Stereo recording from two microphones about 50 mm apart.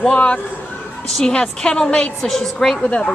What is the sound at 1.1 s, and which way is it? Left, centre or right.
A woman's voice, centre.